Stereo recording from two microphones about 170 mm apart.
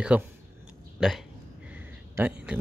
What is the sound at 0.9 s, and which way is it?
Speech, centre (ahead or behind).